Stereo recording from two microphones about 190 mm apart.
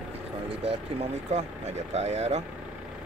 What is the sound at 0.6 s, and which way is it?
Speech, 35° right (ahead or behind).